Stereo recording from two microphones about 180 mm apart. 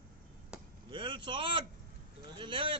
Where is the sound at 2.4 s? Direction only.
30° right (ahead or behind).